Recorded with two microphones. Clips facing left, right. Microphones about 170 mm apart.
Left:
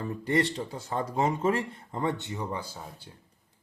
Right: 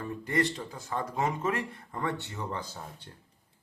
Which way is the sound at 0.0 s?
30° left (ahead or behind).